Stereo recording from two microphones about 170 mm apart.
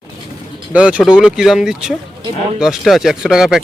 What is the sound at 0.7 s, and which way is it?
A man's voice, 5° right (ahead or behind).